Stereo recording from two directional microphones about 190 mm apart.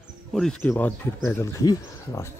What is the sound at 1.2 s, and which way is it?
Speech, 15° left (ahead or behind).